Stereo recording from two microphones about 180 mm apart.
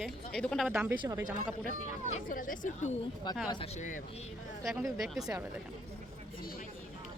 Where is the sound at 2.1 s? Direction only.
50° left (ahead or behind).